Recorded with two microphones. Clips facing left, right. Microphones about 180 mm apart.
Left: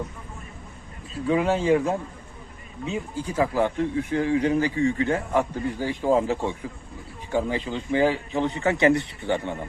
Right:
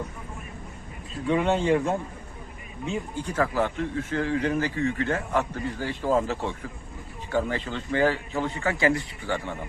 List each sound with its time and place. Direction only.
1.3 s speech: 5° left (ahead or behind); by 9.6 s 25° left (ahead or behind)